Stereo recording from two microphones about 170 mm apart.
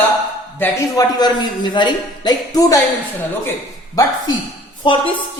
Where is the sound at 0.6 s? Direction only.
20° left (ahead or behind).